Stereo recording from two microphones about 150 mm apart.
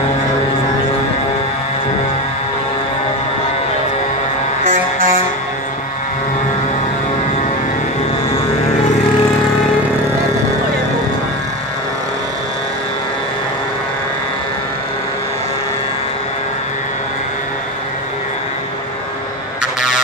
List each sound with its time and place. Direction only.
4.6 s music: 60° right (ahead or behind)